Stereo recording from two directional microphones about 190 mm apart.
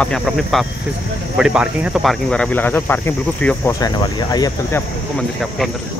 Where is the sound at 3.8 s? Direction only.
20° left (ahead or behind).